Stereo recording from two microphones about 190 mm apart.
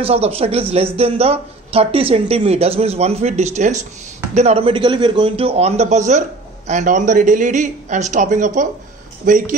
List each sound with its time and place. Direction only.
0.0 s speech: 30° right (ahead or behind)